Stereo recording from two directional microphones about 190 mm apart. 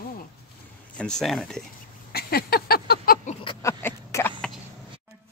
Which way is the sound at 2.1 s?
55° left (ahead or behind).